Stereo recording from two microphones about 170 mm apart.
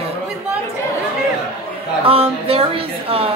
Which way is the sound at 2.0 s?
35° right (ahead or behind).